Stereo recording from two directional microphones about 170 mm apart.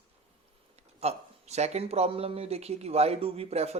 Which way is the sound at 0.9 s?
40° right (ahead or behind).